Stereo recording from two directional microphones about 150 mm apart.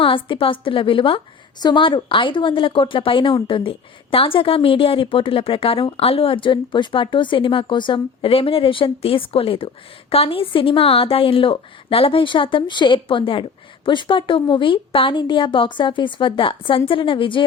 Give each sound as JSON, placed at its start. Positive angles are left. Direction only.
{"t": 0.0, "sound": "a woman's voice", "side_deg": 35}